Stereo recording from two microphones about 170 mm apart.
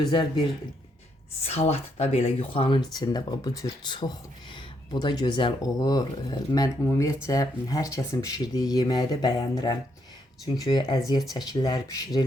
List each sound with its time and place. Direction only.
0.0 s speech: 25° left (ahead or behind)
1.4 s speech: 35° left (ahead or behind); by 12.2 s 20° left (ahead or behind)